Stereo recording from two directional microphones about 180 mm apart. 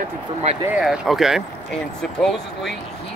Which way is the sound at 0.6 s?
5° right (ahead or behind).